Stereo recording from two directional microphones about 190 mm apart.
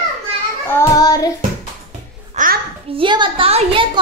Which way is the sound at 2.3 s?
45° right (ahead or behind).